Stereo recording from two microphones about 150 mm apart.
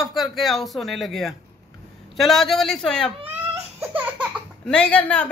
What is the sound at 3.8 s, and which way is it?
Baby laughter, 10° right (ahead or behind).